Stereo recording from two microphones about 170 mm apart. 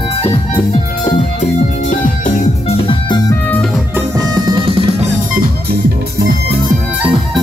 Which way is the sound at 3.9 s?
20° right (ahead or behind).